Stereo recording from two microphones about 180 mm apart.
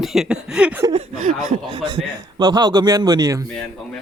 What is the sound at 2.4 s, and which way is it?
Speech, 25° right (ahead or behind).